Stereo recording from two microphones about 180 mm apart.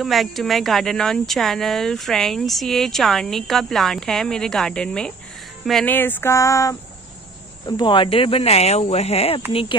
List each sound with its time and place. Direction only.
0.0 s speech: centre (ahead or behind)
5.7 s a sound: 5° left (ahead or behind)
7.6 s speech: 25° left (ahead or behind)